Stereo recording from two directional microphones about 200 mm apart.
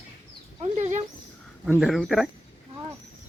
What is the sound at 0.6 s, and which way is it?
Speech, 35° right (ahead or behind).